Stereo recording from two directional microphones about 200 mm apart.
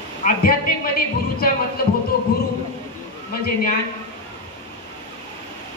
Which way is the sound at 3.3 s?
50° left (ahead or behind).